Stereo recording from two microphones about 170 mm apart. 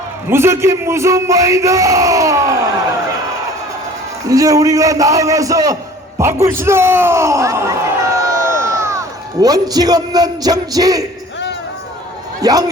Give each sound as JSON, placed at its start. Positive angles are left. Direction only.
{"t": 0.3, "sound": "a man's voice", "side_deg": -15}
{"t": 4.3, "sound": "a man's voice", "side_deg": -20}
{"t": 8.3, "sound": "a sound", "side_deg": -15}
{"t": 12.4, "sound": "a man's voice", "side_deg": -20}